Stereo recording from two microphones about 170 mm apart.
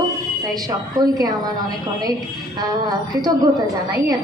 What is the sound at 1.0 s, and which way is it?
Speech, 20° right (ahead or behind).